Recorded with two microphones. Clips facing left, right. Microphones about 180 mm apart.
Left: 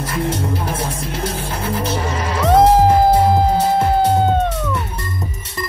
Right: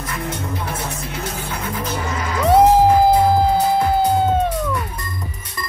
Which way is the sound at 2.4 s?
10° right (ahead or behind).